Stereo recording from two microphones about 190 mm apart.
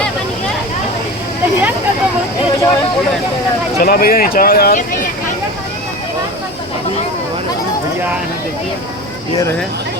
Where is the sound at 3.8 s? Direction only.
50° left (ahead or behind).